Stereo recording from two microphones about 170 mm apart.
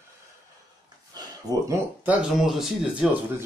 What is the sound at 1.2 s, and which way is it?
Speech, 15° right (ahead or behind).